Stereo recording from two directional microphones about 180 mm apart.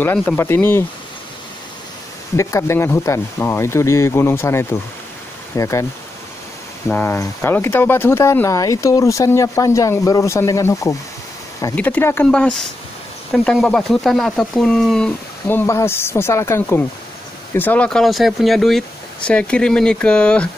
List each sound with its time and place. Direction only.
0.0 s speech: 10° left (ahead or behind)
2.3 s speech: 15° left (ahead or behind)
6.9 s speech: 10° left (ahead or behind)